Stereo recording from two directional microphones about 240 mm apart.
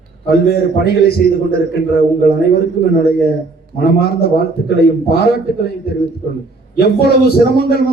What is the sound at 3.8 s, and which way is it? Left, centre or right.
A man's voice, left.